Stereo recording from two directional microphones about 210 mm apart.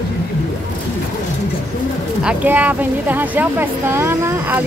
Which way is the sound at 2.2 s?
10° right (ahead or behind).